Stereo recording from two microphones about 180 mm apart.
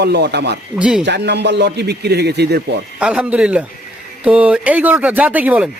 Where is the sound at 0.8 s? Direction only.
5° right (ahead or behind).